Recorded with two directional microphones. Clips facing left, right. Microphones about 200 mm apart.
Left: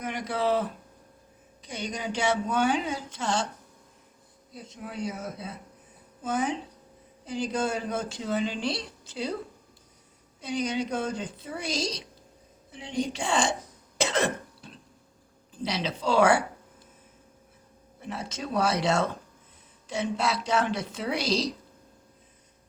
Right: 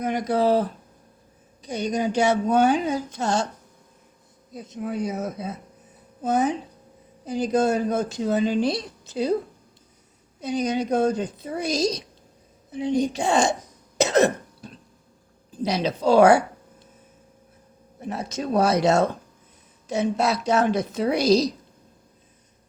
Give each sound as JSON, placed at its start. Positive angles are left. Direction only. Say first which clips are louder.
{"t": 0.0, "sound": "speech", "louder": "right 7 dB", "side_deg": -40}
{"t": 4.5, "sound": "speech", "louder": "right 9 dB", "side_deg": -45}
{"t": 10.4, "sound": "speech", "louder": "right 5 dB", "side_deg": -45}
{"t": 14.0, "sound": "cough", "louder": "right 8 dB", "side_deg": -45}
{"t": 15.5, "sound": "speech", "louder": "right 7 dB", "side_deg": -45}
{"t": 18.0, "sound": "speech", "louder": "right 6 dB", "side_deg": -40}